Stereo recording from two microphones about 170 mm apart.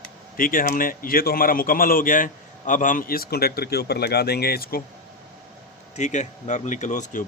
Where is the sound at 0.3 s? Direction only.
55° left (ahead or behind).